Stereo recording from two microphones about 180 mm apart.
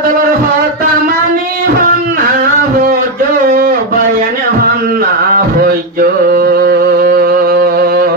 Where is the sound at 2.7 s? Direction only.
50° right (ahead or behind).